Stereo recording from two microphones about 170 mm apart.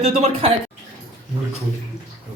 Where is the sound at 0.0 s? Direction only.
40° right (ahead or behind).